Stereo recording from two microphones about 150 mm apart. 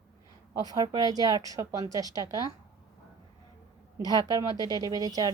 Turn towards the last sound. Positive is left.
turn(degrees=-25)  # may be behind; listen again after turning